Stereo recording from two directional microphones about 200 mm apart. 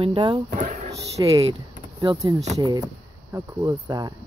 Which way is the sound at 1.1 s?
20° right (ahead or behind).